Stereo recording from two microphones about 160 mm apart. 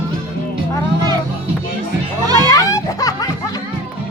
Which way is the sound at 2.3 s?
20° left (ahead or behind).